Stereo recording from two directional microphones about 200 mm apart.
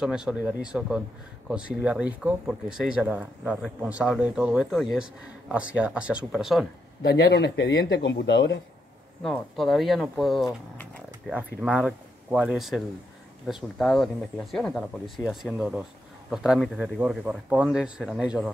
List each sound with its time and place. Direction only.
0.0 s speech: 5° right (ahead or behind)
7.0 s speech: 50° left (ahead or behind)
9.2 s speech: centre (ahead or behind)